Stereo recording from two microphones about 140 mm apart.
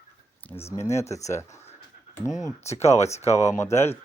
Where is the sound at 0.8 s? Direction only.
20° left (ahead or behind).